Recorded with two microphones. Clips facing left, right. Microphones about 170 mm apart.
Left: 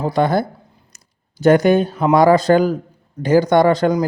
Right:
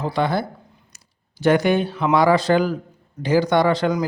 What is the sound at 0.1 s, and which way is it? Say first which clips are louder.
Speech: left 5 dB; 45° left (ahead or behind).